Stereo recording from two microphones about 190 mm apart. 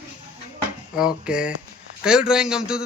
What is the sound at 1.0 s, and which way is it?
A man's voice, 5° right (ahead or behind).